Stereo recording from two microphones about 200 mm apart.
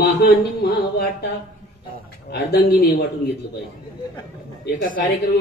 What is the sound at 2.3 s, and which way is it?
Speech, 50° left (ahead or behind).